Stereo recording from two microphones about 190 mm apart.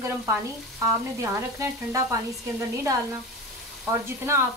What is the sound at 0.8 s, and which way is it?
Frying, 15° right (ahead or behind).